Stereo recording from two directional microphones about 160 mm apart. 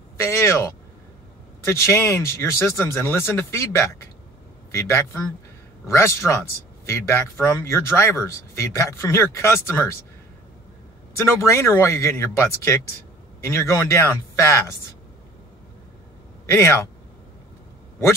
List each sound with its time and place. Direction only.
0.2 s speech: 15° left (ahead or behind)
11.1 s speech: 15° left (ahead or behind)